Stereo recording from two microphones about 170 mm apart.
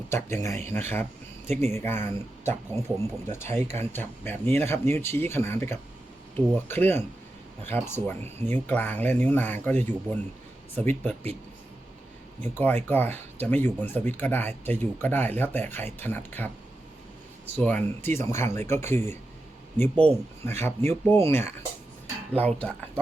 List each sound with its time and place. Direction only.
0.1 s speech: 15° left (ahead or behind)
3.2 s speech: 45° right (ahead or behind)
3.5 s speech: 15° left (ahead or behind)
12.4 s speech: 10° left (ahead or behind)
17.6 s speech: 10° left (ahead or behind)